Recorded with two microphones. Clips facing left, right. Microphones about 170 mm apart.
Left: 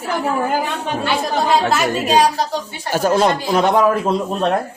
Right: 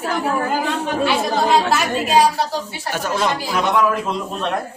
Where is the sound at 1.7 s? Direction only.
Centre (ahead or behind).